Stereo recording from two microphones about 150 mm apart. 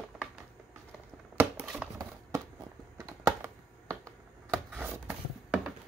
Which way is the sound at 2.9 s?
20° right (ahead or behind).